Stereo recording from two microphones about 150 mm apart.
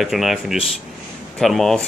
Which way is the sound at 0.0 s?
Centre (ahead or behind).